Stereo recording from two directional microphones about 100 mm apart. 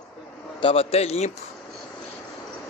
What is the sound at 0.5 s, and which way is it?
Speech, 70° left (ahead or behind).